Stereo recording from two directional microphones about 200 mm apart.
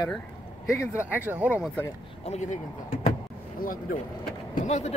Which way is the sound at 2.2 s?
35° left (ahead or behind).